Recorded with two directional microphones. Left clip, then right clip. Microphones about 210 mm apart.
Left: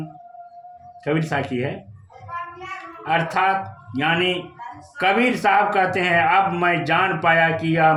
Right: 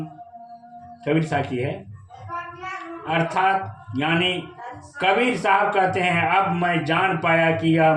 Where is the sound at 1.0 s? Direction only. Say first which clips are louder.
Even; 30° left (ahead or behind).